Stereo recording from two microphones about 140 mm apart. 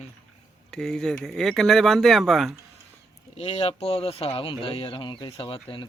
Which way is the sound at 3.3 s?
45° left (ahead or behind).